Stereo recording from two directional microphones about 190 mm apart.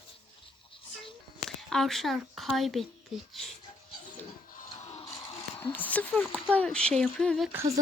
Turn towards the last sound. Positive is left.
turn(degrees=0)  # may be behind; listen again after turning